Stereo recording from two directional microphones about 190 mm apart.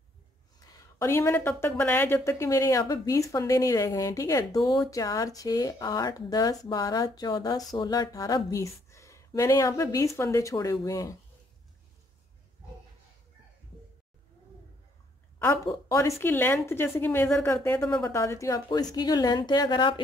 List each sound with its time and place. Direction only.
1.0 s speech: 10° left (ahead or behind)
15.3 s a woman's voice: 15° left (ahead or behind)